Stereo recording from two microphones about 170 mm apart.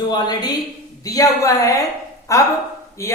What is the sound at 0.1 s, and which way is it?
Speech, 25° left (ahead or behind).